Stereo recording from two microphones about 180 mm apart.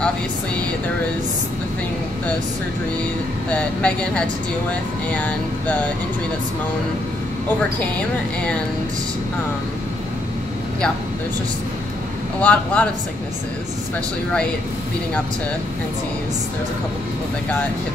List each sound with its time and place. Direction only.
3.4 s speech: 5° left (ahead or behind)
12.4 s speech: 5° left (ahead or behind)